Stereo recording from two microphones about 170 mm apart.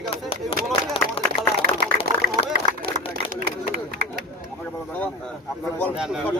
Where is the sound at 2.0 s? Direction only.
65° right (ahead or behind).